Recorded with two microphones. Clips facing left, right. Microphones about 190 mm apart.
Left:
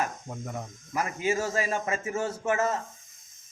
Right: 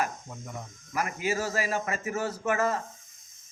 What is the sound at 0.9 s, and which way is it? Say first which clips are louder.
A man's voice: left 2 dB; 25° left (ahead or behind).